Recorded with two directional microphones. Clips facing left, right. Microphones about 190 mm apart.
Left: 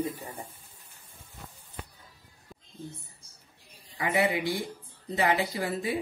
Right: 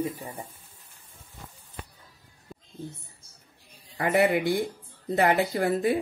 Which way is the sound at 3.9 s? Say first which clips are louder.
Right 4 dB; 55° right (ahead or behind).